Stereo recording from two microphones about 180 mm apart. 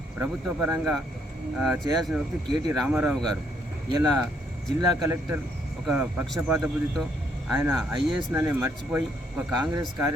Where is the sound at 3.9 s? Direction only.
20° right (ahead or behind).